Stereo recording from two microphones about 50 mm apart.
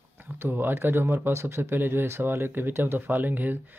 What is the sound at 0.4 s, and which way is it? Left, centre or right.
Speech, right.